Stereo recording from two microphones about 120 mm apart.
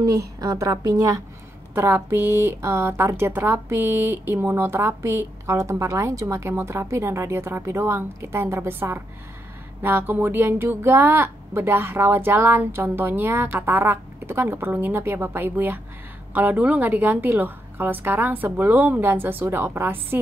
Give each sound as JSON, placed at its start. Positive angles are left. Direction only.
{"t": 0.0, "sound": "speech", "side_deg": -30}
{"t": 1.8, "sound": "speech", "side_deg": -15}